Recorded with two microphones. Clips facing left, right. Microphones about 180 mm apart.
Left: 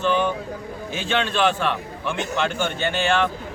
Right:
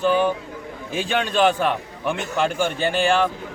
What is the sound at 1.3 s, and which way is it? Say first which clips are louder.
Speech: right 5 dB; 40° right (ahead or behind).